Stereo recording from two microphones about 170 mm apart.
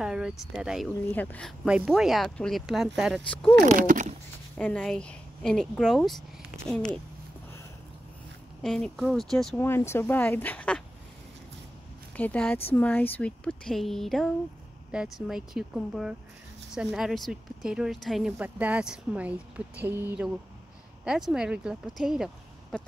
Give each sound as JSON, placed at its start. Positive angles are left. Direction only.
{"t": 0.0, "sound": "speech", "side_deg": -5}
{"t": 1.1, "sound": "speech", "side_deg": 10}
{"t": 3.6, "sound": "speech", "side_deg": -50}
{"t": 4.6, "sound": "speech", "side_deg": 10}
{"t": 8.6, "sound": "speech", "side_deg": 0}
{"t": 9.6, "sound": "speech", "side_deg": 15}
{"t": 12.2, "sound": "speech", "side_deg": 10}